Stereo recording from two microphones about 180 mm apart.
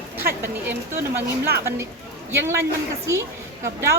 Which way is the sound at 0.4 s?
10° right (ahead or behind).